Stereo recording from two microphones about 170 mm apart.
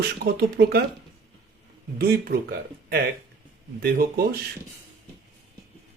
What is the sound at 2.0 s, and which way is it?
Speech, 60° right (ahead or behind).